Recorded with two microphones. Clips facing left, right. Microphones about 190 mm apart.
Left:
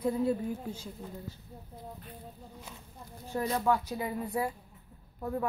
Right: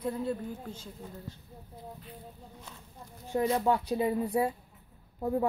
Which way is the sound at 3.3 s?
20° right (ahead or behind).